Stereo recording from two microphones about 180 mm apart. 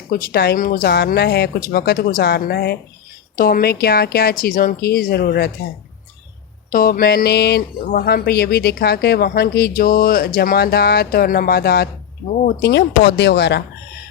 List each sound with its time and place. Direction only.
0.1 s speech: 60° left (ahead or behind)
3.3 s speech: 50° left (ahead or behind)
6.7 s speech: 50° left (ahead or behind)
12.5 s speech: 70° left (ahead or behind)